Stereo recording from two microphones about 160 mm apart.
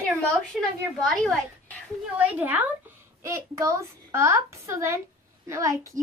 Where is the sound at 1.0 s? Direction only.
Centre (ahead or behind).